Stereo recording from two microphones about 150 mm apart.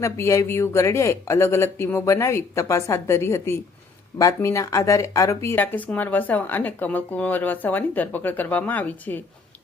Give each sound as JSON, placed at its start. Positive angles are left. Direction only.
{"t": 0.0, "sound": "speech", "side_deg": 20}